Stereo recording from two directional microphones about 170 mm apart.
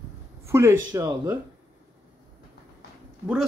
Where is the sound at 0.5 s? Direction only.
15° right (ahead or behind).